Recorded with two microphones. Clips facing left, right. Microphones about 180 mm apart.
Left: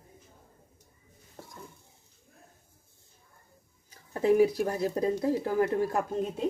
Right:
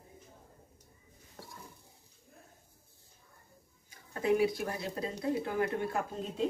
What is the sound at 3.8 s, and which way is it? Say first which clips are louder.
Speech: left 5 dB; 40° left (ahead or behind).